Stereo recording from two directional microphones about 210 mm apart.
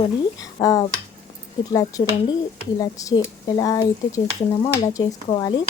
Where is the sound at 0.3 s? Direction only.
15° left (ahead or behind).